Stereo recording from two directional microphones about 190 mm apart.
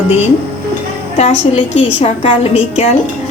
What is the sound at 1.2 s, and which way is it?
A woman's voice, 30° left (ahead or behind).